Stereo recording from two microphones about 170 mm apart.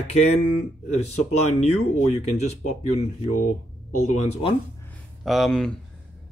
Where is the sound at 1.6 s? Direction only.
40° left (ahead or behind).